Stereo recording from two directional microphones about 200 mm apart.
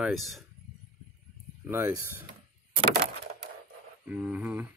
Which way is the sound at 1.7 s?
10° right (ahead or behind).